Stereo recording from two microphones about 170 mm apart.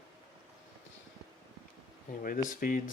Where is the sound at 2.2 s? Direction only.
50° left (ahead or behind).